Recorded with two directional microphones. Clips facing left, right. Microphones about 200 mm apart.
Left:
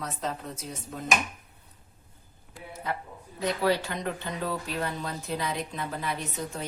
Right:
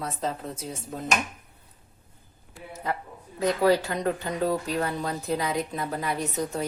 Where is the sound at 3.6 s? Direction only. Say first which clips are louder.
Right 5 dB; 40° right (ahead or behind).